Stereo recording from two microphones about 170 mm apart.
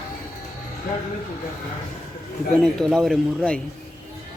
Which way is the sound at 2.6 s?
Centre (ahead or behind).